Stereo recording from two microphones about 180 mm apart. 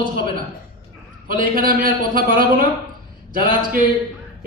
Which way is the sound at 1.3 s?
50° right (ahead or behind).